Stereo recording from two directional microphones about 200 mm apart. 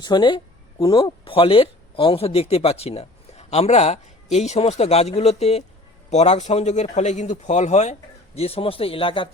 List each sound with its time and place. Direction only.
0.0 s a man's voice: 20° left (ahead or behind)